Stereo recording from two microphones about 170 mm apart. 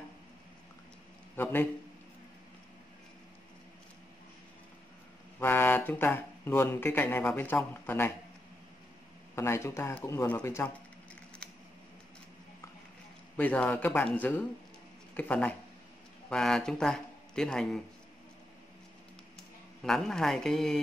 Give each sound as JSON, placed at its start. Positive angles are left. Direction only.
{"t": 1.3, "sound": "a man's voice", "side_deg": 10}
{"t": 5.4, "sound": "speech", "side_deg": 10}
{"t": 9.3, "sound": "speech", "side_deg": 15}
{"t": 13.4, "sound": "a man's voice", "side_deg": 10}
{"t": 19.8, "sound": "speech", "side_deg": 5}